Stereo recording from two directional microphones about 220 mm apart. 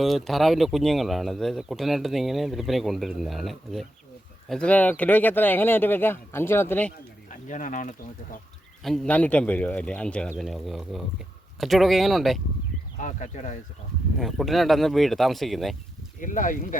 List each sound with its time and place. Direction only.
0.0 s speech: centre (ahead or behind)
7.3 s speech: 35° left (ahead or behind)
8.8 s speech: 5° left (ahead or behind)
13.0 s speech: 35° left (ahead or behind)
14.2 s speech: centre (ahead or behind)
16.2 s speech: 35° left (ahead or behind)